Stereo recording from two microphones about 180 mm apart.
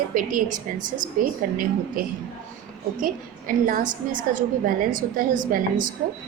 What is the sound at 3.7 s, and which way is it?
A woman's voice, 50° right (ahead or behind).